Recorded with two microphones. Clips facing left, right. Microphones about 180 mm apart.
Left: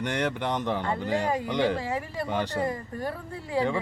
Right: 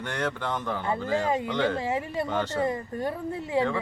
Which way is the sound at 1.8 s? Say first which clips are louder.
Right 3 dB; 20° right (ahead or behind).